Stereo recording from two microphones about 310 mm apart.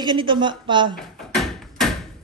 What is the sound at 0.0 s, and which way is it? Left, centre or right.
Speech, centre.